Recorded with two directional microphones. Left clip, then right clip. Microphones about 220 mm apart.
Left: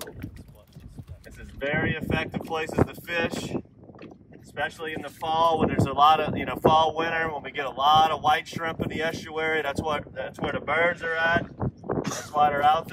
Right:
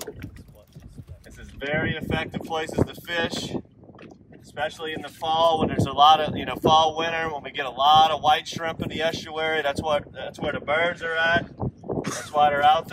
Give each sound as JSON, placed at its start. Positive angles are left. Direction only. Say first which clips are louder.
{"t": 1.6, "sound": "speech", "louder": "even", "side_deg": 5}
{"t": 4.6, "sound": "speech", "louder": "right 1 dB", "side_deg": 5}
{"t": 11.5, "sound": "a sound", "louder": "even", "side_deg": -25}
{"t": 12.3, "sound": "speech", "louder": "right 3 dB", "side_deg": 5}